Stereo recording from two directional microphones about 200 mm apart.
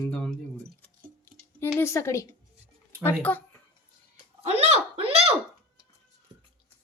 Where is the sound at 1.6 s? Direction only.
15° left (ahead or behind).